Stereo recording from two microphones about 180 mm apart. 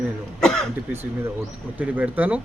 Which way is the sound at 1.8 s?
10° right (ahead or behind).